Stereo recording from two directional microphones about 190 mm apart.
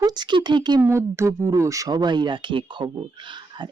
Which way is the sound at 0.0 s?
20° right (ahead or behind).